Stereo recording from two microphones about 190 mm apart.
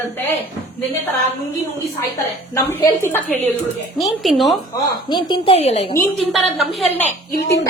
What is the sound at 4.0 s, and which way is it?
Speech, centre (ahead or behind).